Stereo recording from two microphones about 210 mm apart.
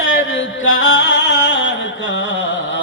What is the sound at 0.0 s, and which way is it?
Music, 65° left (ahead or behind).